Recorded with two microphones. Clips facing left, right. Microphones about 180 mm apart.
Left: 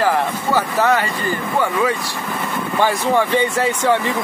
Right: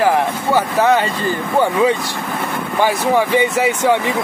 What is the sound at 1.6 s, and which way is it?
Speech, 20° right (ahead or behind).